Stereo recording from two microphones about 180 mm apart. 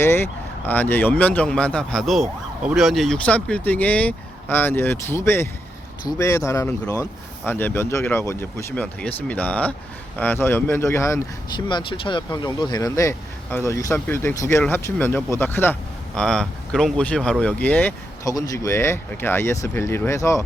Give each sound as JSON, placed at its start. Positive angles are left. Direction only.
{"t": 0.0, "sound": "speech", "side_deg": 10}